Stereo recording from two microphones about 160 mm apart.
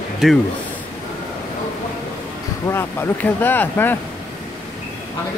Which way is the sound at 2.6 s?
15° left (ahead or behind).